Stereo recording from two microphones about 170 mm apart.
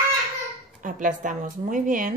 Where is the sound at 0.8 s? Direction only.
50° right (ahead or behind).